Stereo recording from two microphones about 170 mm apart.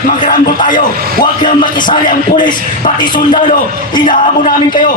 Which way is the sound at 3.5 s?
25° left (ahead or behind).